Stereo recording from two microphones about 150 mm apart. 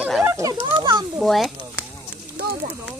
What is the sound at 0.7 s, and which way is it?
Speech, 30° right (ahead or behind).